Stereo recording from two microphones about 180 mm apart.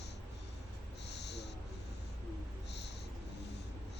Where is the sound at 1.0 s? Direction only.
70° left (ahead or behind).